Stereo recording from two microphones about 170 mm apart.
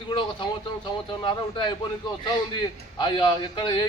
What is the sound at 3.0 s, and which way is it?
Speech, 30° left (ahead or behind).